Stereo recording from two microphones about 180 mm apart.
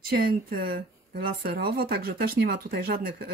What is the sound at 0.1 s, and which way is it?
Speech, 55° right (ahead or behind).